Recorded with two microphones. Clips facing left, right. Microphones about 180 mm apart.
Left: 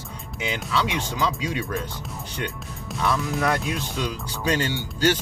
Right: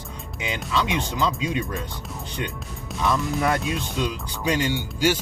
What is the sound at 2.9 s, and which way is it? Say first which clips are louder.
Speech: right 1 dB; centre (ahead or behind).